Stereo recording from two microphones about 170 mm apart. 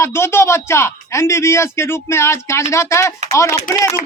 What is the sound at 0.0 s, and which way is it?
Speech, 15° left (ahead or behind).